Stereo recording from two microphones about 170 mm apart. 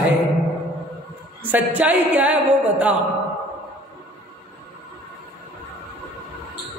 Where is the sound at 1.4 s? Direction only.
10° right (ahead or behind).